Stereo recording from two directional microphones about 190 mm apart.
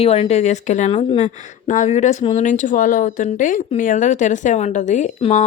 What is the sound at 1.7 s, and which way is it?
Speech, 40° left (ahead or behind).